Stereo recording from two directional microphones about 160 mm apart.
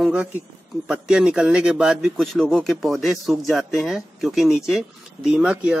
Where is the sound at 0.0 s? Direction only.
5° right (ahead or behind).